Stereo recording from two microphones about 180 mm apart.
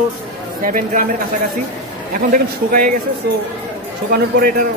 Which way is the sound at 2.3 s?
50° right (ahead or behind).